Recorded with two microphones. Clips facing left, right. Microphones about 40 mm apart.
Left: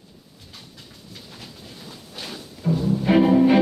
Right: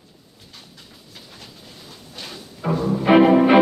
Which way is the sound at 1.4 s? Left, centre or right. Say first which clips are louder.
Left 2 dB; centre.